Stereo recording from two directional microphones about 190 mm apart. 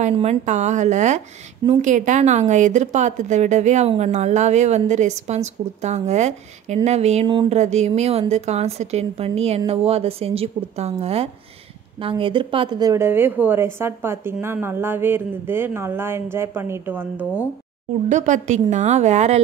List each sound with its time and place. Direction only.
0.0 s a woman's voice: 35° right (ahead or behind)
7.2 s a sound: 25° right (ahead or behind)
7.5 s a woman's voice: 35° right (ahead or behind); by 17.3 s 10° right (ahead or behind)
18.0 s a woman's voice: 40° right (ahead or behind)